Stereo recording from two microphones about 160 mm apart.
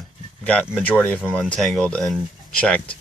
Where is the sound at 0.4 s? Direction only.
10° left (ahead or behind).